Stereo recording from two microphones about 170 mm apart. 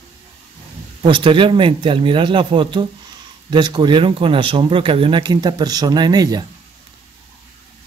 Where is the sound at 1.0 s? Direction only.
30° right (ahead or behind).